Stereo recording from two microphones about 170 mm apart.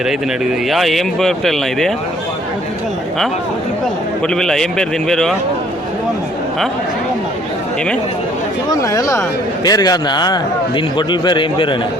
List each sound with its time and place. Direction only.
0.7 s speech: centre (ahead or behind)
4.4 s speech: 5° left (ahead or behind)
8.7 s a man's voice: 20° left (ahead or behind)